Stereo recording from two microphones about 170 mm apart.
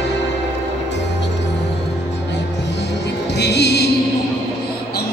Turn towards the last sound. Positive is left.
turn(degrees=80)